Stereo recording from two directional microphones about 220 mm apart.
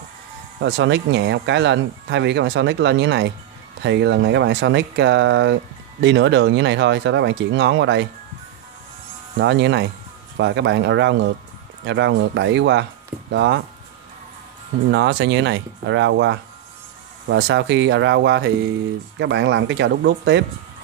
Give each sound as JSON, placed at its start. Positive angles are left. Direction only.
{"t": 0.6, "sound": "speech", "side_deg": -55}
{"t": 9.4, "sound": "speech", "side_deg": -55}
{"t": 14.9, "sound": "speech", "side_deg": -55}